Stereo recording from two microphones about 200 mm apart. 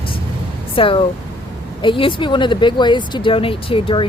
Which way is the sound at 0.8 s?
25° left (ahead or behind).